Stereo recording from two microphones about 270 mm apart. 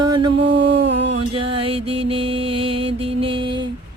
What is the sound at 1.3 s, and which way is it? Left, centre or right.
Music, centre.